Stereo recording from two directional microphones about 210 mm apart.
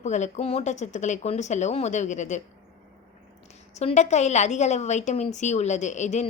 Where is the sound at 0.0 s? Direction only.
35° left (ahead or behind).